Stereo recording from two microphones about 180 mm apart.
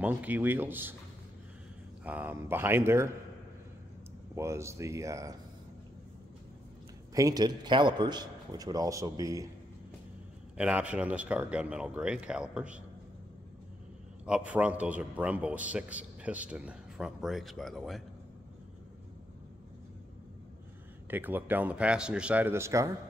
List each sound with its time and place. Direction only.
0.0 s a man's voice: 10° right (ahead or behind)
2.0 s a man's voice: 10° right (ahead or behind)
4.4 s a man's voice: 15° right (ahead or behind)
7.2 s a man's voice: 20° right (ahead or behind)
10.6 s a man's voice: 5° right (ahead or behind)
14.2 s a man's voice: 5° right (ahead or behind)
21.1 s a man's voice: 10° right (ahead or behind)